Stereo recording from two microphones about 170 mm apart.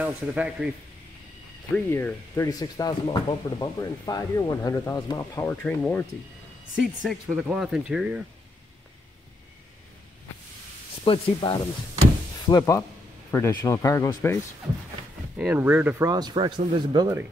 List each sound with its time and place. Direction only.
0.0 s speech: 5° right (ahead or behind)
1.9 s speech: 15° left (ahead or behind); by 8.2 s 5° right (ahead or behind)
11.1 s speech: 35° left (ahead or behind)
12.4 s speech: 20° left (ahead or behind)
15.3 s speech: 10° right (ahead or behind)
16.1 s speech: 25° right (ahead or behind)